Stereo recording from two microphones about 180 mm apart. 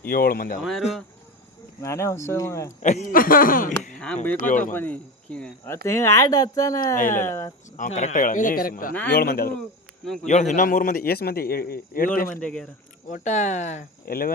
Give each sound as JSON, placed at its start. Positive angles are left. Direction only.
{"t": 0.1, "sound": "speech", "side_deg": 55}
{"t": 0.6, "sound": "speech", "side_deg": 0}
{"t": 1.8, "sound": "speech", "side_deg": 15}
{"t": 2.8, "sound": "a man's voice", "side_deg": 45}
{"t": 4.0, "sound": "speech", "side_deg": 10}
{"t": 6.9, "sound": "a man's voice", "side_deg": 45}
{"t": 7.3, "sound": "speech", "side_deg": 15}
{"t": 7.8, "sound": "a man's voice", "side_deg": 40}
{"t": 8.9, "sound": "speech", "side_deg": 10}
{"t": 9.1, "sound": "speech", "side_deg": 60}
{"t": 10.2, "sound": "a man's voice", "side_deg": 40}
{"t": 12.4, "sound": "speech", "side_deg": 5}
{"t": 13.1, "sound": "a man's voice", "side_deg": 45}